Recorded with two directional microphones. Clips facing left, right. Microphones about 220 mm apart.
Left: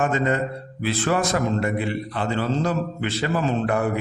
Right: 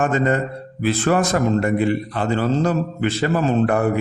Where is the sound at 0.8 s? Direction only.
50° right (ahead or behind).